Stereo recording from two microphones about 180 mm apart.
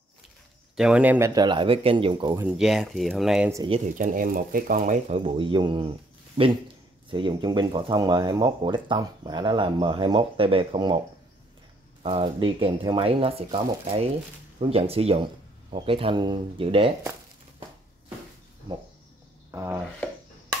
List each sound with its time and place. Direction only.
0.7 s speech: 5° right (ahead or behind)
1.3 s speech: 25° right (ahead or behind)
2.4 s speech: centre (ahead or behind)
4.0 s speech: 50° right (ahead or behind)
5.2 s speech: 30° right (ahead or behind)
12.0 s speech: 30° right (ahead or behind)
19.5 s chopping: 15° right (ahead or behind)